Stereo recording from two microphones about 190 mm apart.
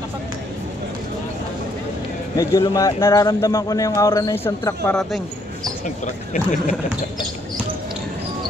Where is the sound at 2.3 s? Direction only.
20° left (ahead or behind).